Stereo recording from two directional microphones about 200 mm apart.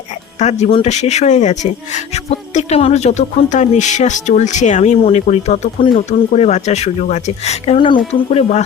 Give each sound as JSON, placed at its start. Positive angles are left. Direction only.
{"t": 0.3, "sound": "speech", "side_deg": 35}